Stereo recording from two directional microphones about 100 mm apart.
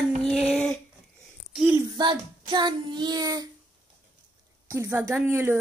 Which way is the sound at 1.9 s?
50° right (ahead or behind).